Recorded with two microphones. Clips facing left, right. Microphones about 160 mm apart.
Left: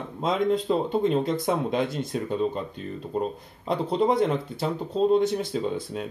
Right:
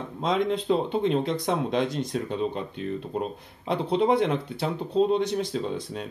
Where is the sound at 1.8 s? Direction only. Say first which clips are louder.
Right 1 dB; 55° left (ahead or behind).